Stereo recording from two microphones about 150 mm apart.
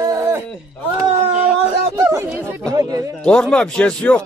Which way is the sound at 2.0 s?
20° right (ahead or behind).